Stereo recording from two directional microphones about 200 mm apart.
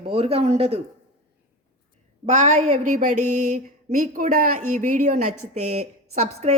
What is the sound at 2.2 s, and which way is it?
Speech, 35° right (ahead or behind).